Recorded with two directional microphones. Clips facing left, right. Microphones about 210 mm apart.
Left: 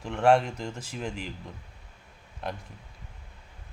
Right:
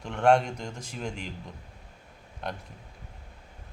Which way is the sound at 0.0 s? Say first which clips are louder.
Even; 5° left (ahead or behind).